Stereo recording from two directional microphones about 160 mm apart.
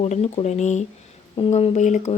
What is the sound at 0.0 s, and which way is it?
Speech, 45° left (ahead or behind).